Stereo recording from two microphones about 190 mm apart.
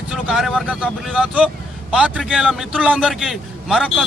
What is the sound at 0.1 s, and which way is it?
A man's voice, centre (ahead or behind).